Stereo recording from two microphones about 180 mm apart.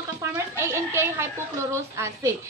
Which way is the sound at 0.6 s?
15° right (ahead or behind).